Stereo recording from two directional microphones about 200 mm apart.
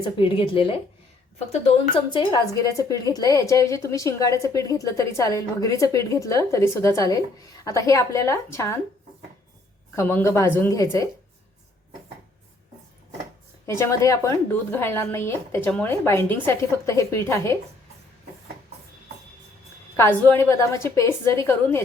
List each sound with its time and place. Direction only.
0.2 s speech: 25° left (ahead or behind)
2.0 s a woman's voice: 20° left (ahead or behind)
9.9 s a woman's voice: 10° left (ahead or behind)
13.7 s a woman's voice: 15° left (ahead or behind)
20.0 s a woman's voice: 10° left (ahead or behind)